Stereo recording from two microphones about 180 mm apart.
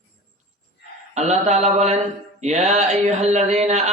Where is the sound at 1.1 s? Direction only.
40° right (ahead or behind).